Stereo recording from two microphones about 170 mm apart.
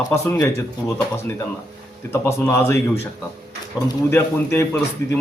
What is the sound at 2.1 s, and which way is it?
Speech, 15° left (ahead or behind).